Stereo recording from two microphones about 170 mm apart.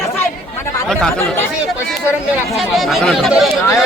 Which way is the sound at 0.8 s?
Centre (ahead or behind).